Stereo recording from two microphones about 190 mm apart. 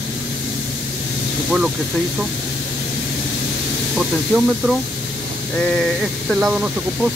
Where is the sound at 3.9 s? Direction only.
5° right (ahead or behind).